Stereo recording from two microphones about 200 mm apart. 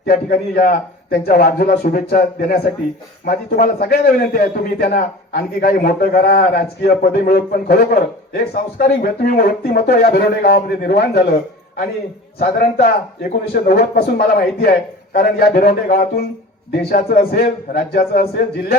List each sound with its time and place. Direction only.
0.0 s a man's voice: 50° left (ahead or behind)
12.4 s a man's voice: 45° left (ahead or behind)